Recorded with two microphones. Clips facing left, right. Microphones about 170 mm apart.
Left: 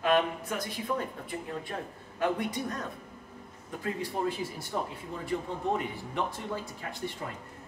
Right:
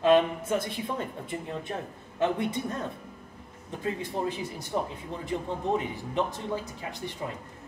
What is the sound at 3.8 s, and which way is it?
Speech, 20° right (ahead or behind).